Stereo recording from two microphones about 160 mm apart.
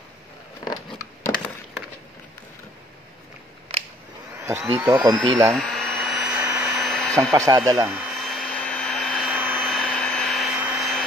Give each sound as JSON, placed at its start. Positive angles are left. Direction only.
{"t": 0.7, "sound": "patter", "side_deg": 25}
{"t": 4.5, "sound": "speech", "side_deg": -15}
{"t": 5.7, "sound": "a sound", "side_deg": 5}
{"t": 6.4, "sound": "vacuum cleaner", "side_deg": -15}
{"t": 6.7, "sound": "a sound", "side_deg": 0}
{"t": 7.3, "sound": "speech", "side_deg": -20}
{"t": 8.1, "sound": "hair dryer", "side_deg": 0}
{"t": 9.3, "sound": "vacuum cleaner", "side_deg": -10}
{"t": 9.6, "sound": "vacuum cleaner", "side_deg": 5}